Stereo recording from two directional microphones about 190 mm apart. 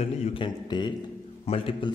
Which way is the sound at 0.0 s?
30° left (ahead or behind).